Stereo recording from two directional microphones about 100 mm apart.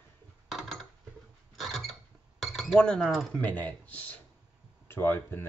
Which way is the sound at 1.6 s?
Centre (ahead or behind).